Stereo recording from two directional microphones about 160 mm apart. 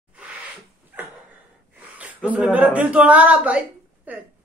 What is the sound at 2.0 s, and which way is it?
A woman's voice, 10° right (ahead or behind).